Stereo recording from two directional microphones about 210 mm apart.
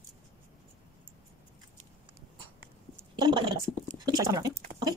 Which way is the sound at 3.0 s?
20° right (ahead or behind).